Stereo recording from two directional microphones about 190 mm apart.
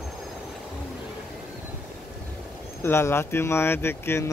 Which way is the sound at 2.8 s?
15° left (ahead or behind).